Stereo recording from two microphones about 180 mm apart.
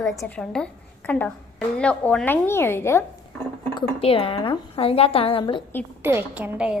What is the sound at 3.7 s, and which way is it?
A woman's voice, 30° left (ahead or behind).